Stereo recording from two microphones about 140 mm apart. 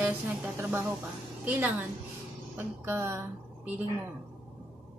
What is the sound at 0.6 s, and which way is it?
A woman's voice, 15° right (ahead or behind).